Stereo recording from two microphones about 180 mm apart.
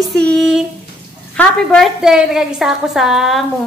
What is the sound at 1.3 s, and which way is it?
A woman's voice, 5° left (ahead or behind).